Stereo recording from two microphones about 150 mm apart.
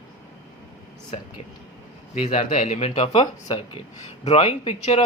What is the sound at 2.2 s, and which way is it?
A man's voice, 45° left (ahead or behind).